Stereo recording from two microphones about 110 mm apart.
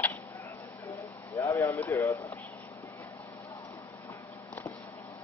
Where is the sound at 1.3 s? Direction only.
25° left (ahead or behind).